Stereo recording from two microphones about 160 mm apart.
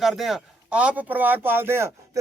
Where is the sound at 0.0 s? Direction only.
Centre (ahead or behind).